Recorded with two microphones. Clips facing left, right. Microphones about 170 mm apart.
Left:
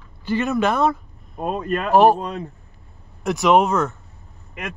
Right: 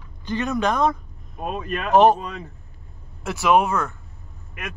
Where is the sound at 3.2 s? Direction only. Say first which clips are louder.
Left 3 dB; 20° left (ahead or behind).